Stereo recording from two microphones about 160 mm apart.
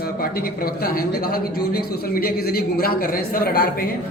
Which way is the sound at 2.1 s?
70° left (ahead or behind).